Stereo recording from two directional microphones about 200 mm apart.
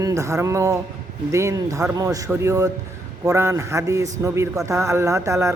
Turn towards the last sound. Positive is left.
turn(degrees=-15)  # may be behind; listen again after turning